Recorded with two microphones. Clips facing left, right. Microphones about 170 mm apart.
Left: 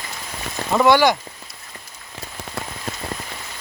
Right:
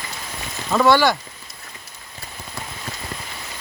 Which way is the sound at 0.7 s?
15° left (ahead or behind).